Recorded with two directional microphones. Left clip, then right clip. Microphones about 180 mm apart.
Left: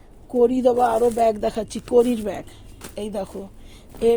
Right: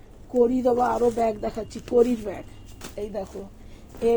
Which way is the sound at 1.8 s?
50° left (ahead or behind).